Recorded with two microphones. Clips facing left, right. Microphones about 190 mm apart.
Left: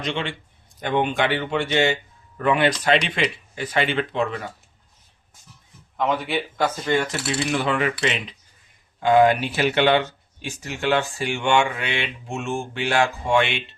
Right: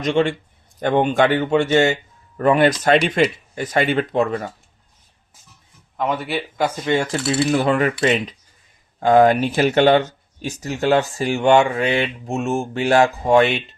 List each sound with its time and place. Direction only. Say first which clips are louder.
0.0 s speech: right 9 dB; 45° right (ahead or behind)
6.0 s a man's voice: right 1 dB; 5° right (ahead or behind)
6.8 s speech: right 4 dB; 25° right (ahead or behind)
7.5 s speech: right 3 dB; 40° right (ahead or behind)